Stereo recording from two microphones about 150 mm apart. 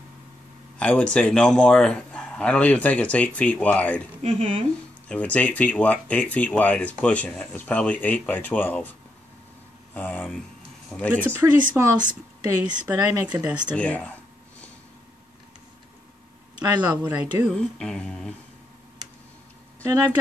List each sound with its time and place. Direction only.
0.7 s a man's voice: 5° left (ahead or behind)
4.2 s speech: 45° right (ahead or behind)
5.0 s a man's voice: 10° left (ahead or behind)
9.9 s a man's voice: 10° left (ahead or behind)
11.2 s a woman's voice: 15° right (ahead or behind)
13.7 s a man's voice: 10° left (ahead or behind)
17.1 s speech: 10° right (ahead or behind)
17.6 s a man's voice: 5° left (ahead or behind)
19.8 s speech: 25° right (ahead or behind)